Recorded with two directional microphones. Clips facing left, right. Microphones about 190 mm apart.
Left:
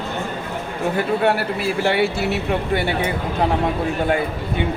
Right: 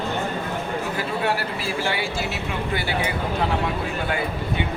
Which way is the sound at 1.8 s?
60° left (ahead or behind).